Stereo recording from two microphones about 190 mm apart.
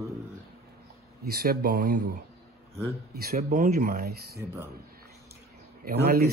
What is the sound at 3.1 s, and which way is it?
Speech, 45° right (ahead or behind).